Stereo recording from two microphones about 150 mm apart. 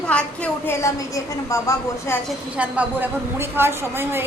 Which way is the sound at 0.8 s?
20° left (ahead or behind).